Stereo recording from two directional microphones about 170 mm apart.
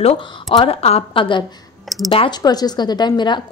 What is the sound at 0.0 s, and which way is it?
A woman's voice, 35° left (ahead or behind).